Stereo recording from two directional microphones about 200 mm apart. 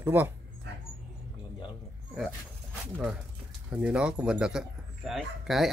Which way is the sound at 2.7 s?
10° right (ahead or behind).